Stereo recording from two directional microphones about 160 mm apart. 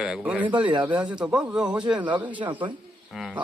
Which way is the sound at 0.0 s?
5° right (ahead or behind).